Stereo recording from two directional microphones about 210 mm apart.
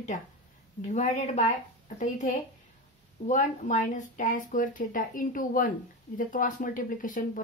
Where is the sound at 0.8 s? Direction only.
35° left (ahead or behind).